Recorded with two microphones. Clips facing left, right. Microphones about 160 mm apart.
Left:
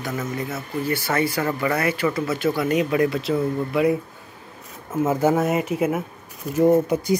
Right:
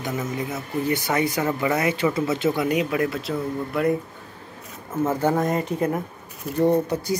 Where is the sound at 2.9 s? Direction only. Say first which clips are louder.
Left 4 dB; centre (ahead or behind).